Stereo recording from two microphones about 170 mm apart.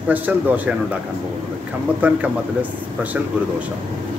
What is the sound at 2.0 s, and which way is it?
Speech, 10° right (ahead or behind).